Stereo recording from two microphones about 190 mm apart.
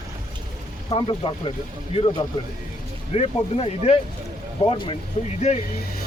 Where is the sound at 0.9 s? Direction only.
30° left (ahead or behind).